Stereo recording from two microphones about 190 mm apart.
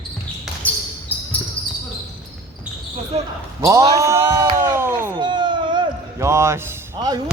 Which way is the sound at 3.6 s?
15° right (ahead or behind).